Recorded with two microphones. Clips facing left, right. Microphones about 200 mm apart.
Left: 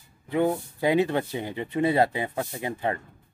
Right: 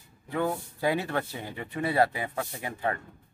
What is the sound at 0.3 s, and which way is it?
Speech, 20° left (ahead or behind).